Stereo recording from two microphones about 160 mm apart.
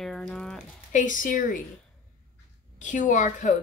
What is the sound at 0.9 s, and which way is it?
Speech, 55° left (ahead or behind).